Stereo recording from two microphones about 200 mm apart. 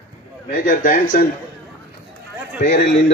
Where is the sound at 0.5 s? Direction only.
45° left (ahead or behind).